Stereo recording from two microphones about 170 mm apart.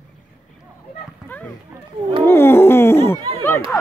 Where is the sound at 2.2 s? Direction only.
15° left (ahead or behind).